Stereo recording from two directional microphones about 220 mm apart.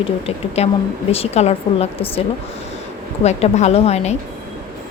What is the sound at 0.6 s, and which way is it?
A woman's voice, 30° left (ahead or behind).